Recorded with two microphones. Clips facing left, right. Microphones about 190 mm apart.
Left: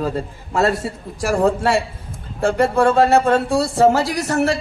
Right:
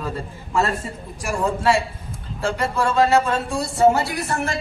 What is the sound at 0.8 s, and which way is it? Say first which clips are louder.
A woman's voice: left 7 dB; 65° left (ahead or behind).